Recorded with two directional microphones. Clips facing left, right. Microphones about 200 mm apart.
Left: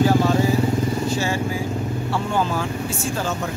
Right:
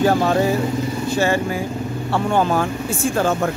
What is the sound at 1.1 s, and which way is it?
Speech, 60° right (ahead or behind).